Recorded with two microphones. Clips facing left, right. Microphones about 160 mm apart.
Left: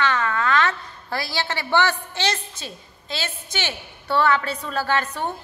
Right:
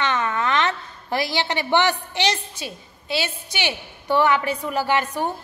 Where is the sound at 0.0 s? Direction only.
20° right (ahead or behind).